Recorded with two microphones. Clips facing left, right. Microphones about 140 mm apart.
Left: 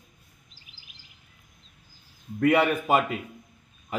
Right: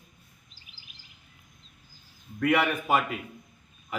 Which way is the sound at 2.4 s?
30° left (ahead or behind).